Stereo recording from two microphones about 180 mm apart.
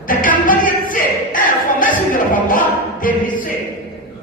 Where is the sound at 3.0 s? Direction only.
50° left (ahead or behind).